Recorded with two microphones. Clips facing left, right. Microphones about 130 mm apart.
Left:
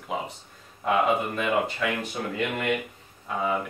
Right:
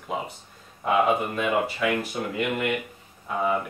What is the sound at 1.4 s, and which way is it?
Speech, 5° right (ahead or behind).